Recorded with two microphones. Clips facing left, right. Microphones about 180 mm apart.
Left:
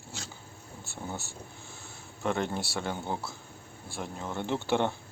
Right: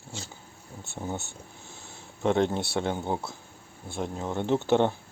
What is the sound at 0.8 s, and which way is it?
Speech, 20° right (ahead or behind).